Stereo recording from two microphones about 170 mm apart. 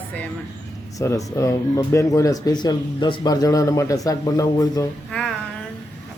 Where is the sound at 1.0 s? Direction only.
15° left (ahead or behind).